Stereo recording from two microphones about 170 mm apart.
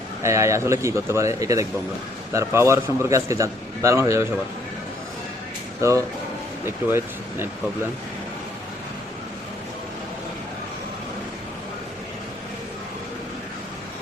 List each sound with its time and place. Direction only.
0.2 s a man's voice: 15° right (ahead or behind)
5.8 s a man's voice: 20° right (ahead or behind)